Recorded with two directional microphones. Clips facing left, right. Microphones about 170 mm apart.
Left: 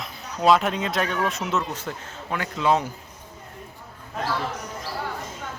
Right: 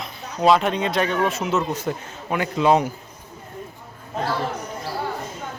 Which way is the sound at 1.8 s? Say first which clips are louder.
Right 6 dB; 15° right (ahead or behind).